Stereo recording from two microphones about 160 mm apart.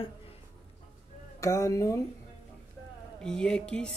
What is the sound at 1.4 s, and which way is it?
Speech, 20° left (ahead or behind).